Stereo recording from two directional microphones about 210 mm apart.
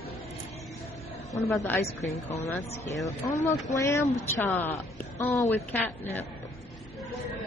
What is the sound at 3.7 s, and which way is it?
Speech, 15° left (ahead or behind).